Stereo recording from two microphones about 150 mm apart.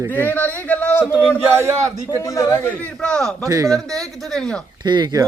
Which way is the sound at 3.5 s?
20° right (ahead or behind).